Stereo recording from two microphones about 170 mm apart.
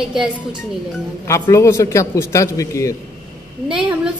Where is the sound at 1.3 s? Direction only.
15° left (ahead or behind).